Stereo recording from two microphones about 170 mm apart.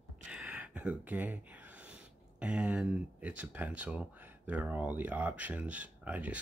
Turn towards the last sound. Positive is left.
turn(degrees=-10)  # may be behind; listen again after turning